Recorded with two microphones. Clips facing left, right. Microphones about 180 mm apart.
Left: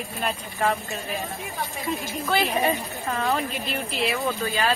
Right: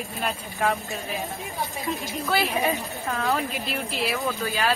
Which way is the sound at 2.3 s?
Centre (ahead or behind).